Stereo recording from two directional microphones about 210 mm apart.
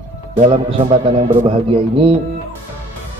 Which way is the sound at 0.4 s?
25° right (ahead or behind).